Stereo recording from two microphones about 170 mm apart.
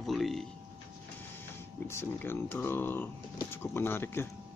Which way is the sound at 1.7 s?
15° left (ahead or behind).